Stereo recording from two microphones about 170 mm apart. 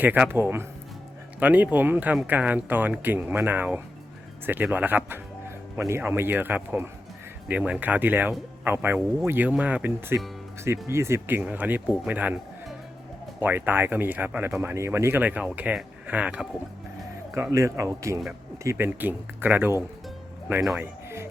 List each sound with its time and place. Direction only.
0.0 s speech: 10° right (ahead or behind)